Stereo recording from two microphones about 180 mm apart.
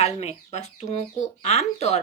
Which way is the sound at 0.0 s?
35° left (ahead or behind).